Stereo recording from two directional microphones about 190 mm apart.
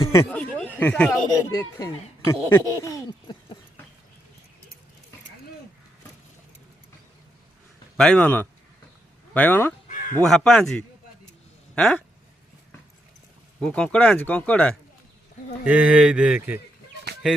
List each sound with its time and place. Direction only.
0.1 s a sound: 10° left (ahead or behind)
1.5 s speech: 15° left (ahead or behind)
7.9 s speech: 5° left (ahead or behind)
13.6 s speech: 5° left (ahead or behind)
15.6 s speech: 5° right (ahead or behind)